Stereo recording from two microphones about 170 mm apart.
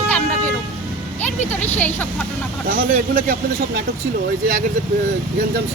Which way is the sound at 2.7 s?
60° right (ahead or behind).